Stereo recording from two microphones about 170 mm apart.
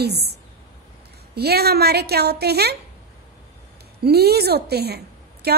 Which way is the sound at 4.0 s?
70° right (ahead or behind).